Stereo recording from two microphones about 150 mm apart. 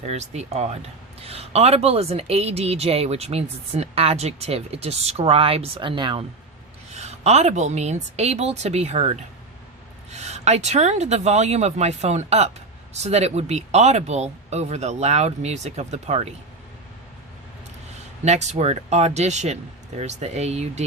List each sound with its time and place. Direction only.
0.0 s speech: 45° right (ahead or behind)
6.9 s speech: 45° right (ahead or behind)
18.3 s speech: 50° right (ahead or behind)